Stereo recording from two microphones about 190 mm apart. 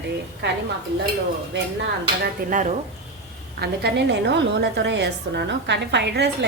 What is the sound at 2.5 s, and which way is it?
Speech, 40° right (ahead or behind).